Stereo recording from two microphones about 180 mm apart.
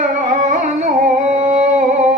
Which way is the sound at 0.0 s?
45° right (ahead or behind).